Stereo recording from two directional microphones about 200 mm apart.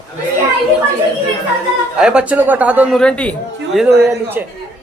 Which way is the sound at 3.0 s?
5° left (ahead or behind).